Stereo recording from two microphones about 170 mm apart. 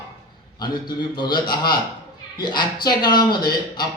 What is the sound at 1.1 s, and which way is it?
A man's voice, 25° left (ahead or behind).